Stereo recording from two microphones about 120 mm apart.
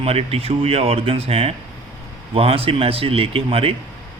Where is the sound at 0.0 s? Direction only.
55° right (ahead or behind).